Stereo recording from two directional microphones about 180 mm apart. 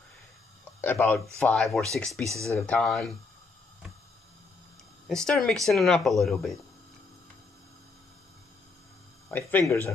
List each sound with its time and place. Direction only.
0.7 s speech: 10° left (ahead or behind)
2.2 s speech: 15° right (ahead or behind)
2.5 s speech: 5° left (ahead or behind)
5.0 s speech: 5° left (ahead or behind)
9.3 s speech: 10° left (ahead or behind)